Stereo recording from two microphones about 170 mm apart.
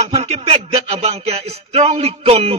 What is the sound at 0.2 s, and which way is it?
A man's voice, 40° right (ahead or behind).